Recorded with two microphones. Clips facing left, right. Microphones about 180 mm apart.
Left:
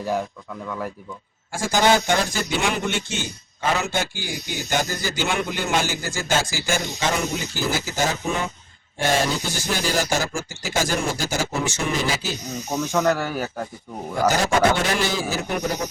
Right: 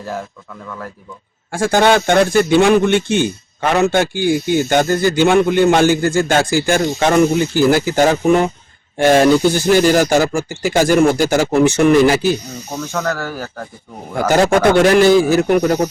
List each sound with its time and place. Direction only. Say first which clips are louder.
1.5 s speech: right 6 dB; 60° right (ahead or behind)
12.5 s speech: even; 15° left (ahead or behind)
14.4 s speech: right 8 dB; 60° right (ahead or behind)